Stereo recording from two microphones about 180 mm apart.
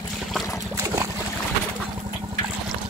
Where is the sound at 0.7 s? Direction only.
15° right (ahead or behind).